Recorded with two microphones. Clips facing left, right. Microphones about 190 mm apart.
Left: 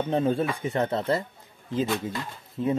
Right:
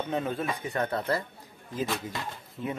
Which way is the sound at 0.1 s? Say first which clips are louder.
Left 7 dB; 30° left (ahead or behind).